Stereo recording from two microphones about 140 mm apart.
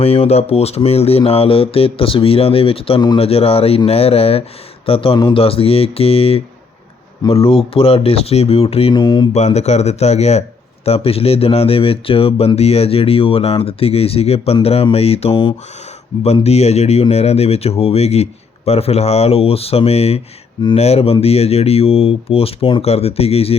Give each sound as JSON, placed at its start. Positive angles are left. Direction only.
{"t": 0.0, "sound": "speech", "side_deg": 45}
{"t": 9.0, "sound": "speech", "side_deg": 30}
{"t": 9.3, "sound": "speech", "side_deg": 55}